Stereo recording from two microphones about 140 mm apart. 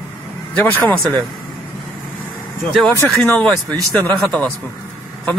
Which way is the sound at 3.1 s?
5° left (ahead or behind).